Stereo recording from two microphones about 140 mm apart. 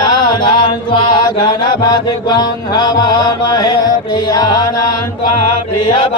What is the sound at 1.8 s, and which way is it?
Mantra, 30° left (ahead or behind).